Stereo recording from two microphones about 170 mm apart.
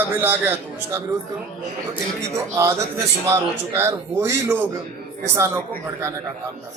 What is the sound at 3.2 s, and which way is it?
A man's voice, 15° right (ahead or behind).